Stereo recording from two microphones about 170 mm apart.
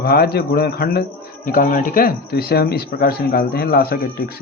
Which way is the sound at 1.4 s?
55° left (ahead or behind).